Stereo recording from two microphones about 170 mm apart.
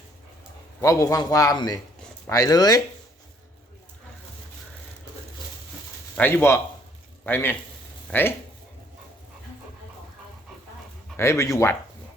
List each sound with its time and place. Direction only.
0.8 s a man's voice: 20° left (ahead or behind)
6.1 s speech: 10° left (ahead or behind)
11.2 s speech: 15° left (ahead or behind)